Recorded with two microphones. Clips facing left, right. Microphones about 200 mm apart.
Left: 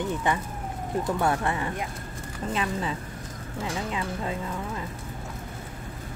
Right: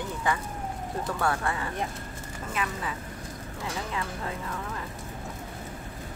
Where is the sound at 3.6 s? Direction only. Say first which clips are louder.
Left 3 dB; 20° left (ahead or behind).